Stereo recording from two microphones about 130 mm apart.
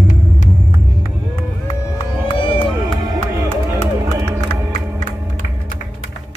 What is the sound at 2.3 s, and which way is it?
Crowd, 45° left (ahead or behind).